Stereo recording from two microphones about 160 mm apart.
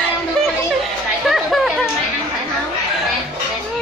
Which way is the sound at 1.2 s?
Centre (ahead or behind).